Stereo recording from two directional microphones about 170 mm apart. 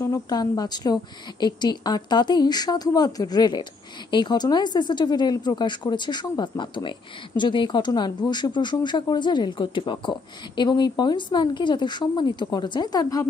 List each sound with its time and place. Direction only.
0.0 s speech: 20° left (ahead or behind)